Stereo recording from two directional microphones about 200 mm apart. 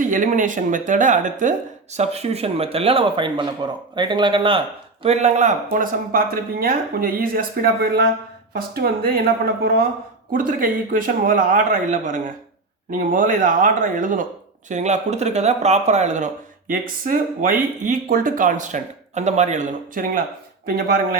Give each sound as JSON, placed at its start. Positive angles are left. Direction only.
{"t": 0.0, "sound": "speech", "side_deg": -40}